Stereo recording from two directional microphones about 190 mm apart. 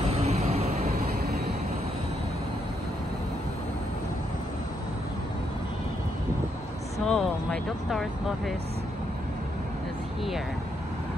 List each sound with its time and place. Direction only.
0.1 s vehicle: 35° right (ahead or behind)
0.9 s vehicle: 55° right (ahead or behind)
7.1 s speech: 5° left (ahead or behind)